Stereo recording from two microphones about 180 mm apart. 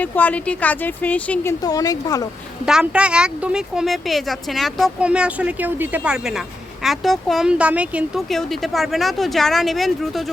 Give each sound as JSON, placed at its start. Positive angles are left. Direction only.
{"t": 0.0, "sound": "a woman's voice", "side_deg": 10}
{"t": 1.6, "sound": "a woman's voice", "side_deg": 20}
{"t": 2.6, "sound": "speech", "side_deg": -5}